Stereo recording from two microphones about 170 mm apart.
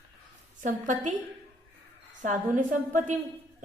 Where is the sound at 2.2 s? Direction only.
45° right (ahead or behind).